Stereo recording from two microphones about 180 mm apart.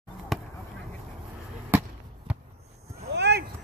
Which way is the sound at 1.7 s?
10° right (ahead or behind).